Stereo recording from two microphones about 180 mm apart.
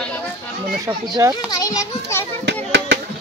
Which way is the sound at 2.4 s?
75° right (ahead or behind).